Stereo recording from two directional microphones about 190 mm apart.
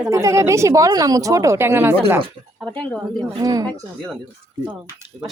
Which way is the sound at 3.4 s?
20° right (ahead or behind).